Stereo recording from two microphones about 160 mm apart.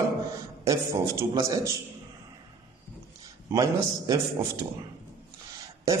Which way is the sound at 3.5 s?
20° right (ahead or behind).